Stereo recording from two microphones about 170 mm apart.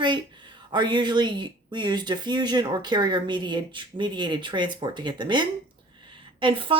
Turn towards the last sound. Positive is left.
turn(degrees=-30)  # may be behind; listen again after turning